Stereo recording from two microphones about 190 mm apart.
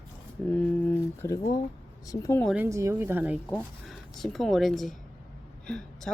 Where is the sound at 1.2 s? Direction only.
15° left (ahead or behind).